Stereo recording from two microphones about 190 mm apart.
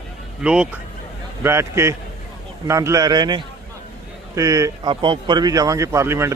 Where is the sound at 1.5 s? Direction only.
15° right (ahead or behind).